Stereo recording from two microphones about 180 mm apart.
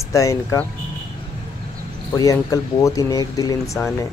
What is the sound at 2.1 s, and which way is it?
Speech, 20° left (ahead or behind).